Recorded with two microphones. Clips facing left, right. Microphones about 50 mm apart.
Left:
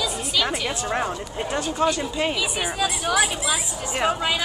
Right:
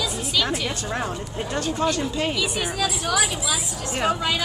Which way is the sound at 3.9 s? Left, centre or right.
Centre.